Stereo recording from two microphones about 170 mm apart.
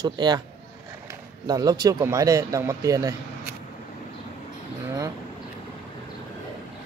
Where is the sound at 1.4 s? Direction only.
25° right (ahead or behind).